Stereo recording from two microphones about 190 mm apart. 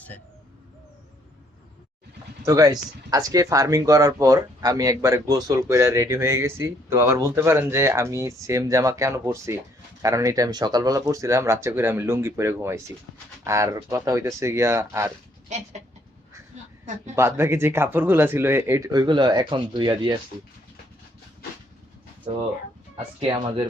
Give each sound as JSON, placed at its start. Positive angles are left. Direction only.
{"t": 2.4, "sound": "speech", "side_deg": -15}
{"t": 17.2, "sound": "speech", "side_deg": -15}
{"t": 23.2, "sound": "speech", "side_deg": -25}